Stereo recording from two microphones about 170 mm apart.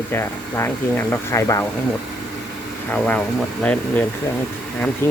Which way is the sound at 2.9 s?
10° left (ahead or behind).